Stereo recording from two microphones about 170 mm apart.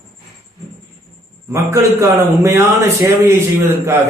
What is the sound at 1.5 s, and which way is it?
A man's voice, 15° right (ahead or behind).